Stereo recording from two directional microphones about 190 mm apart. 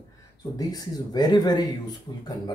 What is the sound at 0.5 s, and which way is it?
Speech, 20° left (ahead or behind).